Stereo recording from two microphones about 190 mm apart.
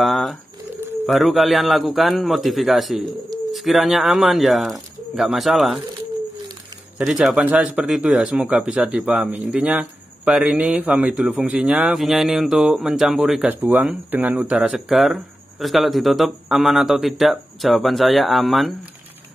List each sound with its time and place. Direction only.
0.0 s bird: centre (ahead or behind)
1.0 s speech: centre (ahead or behind)
7.0 s speech: 5° right (ahead or behind)